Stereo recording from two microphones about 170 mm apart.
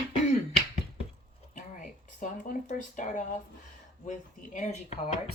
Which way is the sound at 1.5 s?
50° left (ahead or behind).